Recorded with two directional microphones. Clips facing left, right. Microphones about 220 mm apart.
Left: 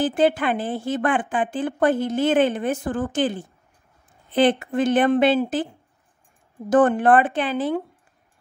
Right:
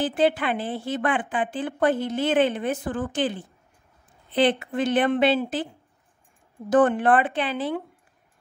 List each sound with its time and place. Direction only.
0.0 s a woman's voice: 45° left (ahead or behind)
6.7 s a woman's voice: 45° left (ahead or behind)